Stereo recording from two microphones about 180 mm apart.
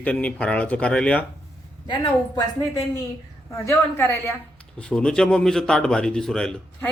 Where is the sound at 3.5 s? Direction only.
15° left (ahead or behind).